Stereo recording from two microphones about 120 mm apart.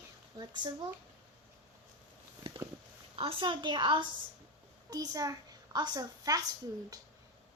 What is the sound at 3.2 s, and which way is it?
A woman's voice, 45° right (ahead or behind).